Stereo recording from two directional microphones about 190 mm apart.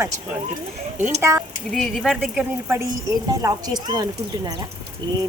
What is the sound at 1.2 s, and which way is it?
Speech, 15° right (ahead or behind).